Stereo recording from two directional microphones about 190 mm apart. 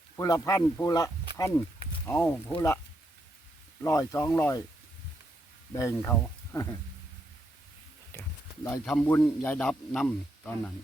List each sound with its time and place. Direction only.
0.2 s speech: 15° left (ahead or behind)
3.8 s speech: 15° left (ahead or behind)
5.7 s speech: 15° left (ahead or behind)
8.8 s a man's voice: 5° left (ahead or behind)